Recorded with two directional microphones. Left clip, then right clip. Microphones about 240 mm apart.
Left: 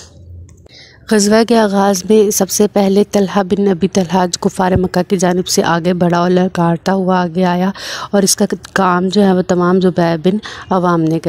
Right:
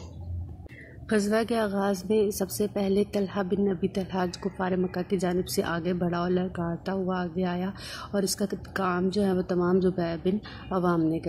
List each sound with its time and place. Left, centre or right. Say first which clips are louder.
1.0 s a woman's voice: left 15 dB; left